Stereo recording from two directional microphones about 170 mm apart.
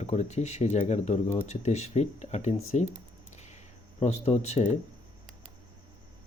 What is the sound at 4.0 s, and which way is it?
Speech, 40° left (ahead or behind).